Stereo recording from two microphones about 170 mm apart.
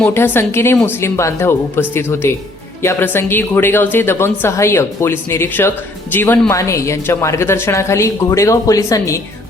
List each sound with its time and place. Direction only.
0.0 s speech: 15° left (ahead or behind)